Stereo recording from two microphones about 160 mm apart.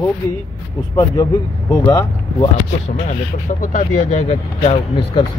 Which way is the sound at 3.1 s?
55° left (ahead or behind).